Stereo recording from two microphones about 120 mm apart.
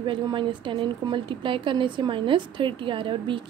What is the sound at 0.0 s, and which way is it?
A woman's voice, 45° right (ahead or behind).